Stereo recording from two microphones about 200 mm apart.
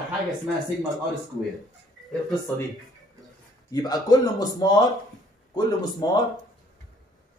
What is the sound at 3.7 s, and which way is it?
Speech, 20° left (ahead or behind).